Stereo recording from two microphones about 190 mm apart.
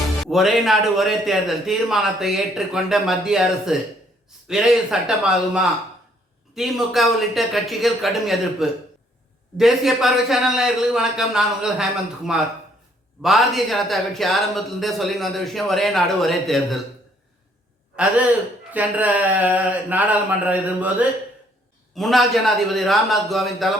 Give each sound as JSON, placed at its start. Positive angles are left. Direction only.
{"t": 0.2, "sound": "a man's voice", "side_deg": 0}
{"t": 18.7, "sound": "speech", "side_deg": -10}
{"t": 21.9, "sound": "a man's voice", "side_deg": 0}